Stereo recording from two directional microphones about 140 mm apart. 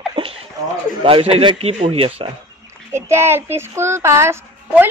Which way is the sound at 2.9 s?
20° right (ahead or behind).